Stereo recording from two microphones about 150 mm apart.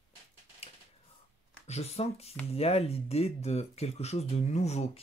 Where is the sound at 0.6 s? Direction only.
40° left (ahead or behind).